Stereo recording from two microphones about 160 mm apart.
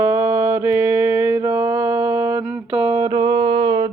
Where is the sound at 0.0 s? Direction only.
20° right (ahead or behind).